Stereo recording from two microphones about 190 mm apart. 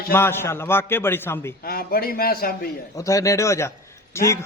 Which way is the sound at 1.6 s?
50° left (ahead or behind).